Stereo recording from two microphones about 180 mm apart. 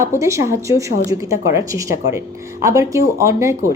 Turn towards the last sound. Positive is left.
turn(degrees=-15)  # may be behind; listen again after turning